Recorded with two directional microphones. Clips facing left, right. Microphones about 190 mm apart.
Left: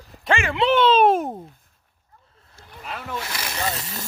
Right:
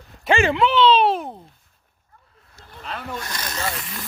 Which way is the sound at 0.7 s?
50° left (ahead or behind).